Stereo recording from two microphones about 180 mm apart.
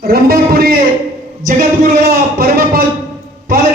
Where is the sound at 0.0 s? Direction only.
55° right (ahead or behind).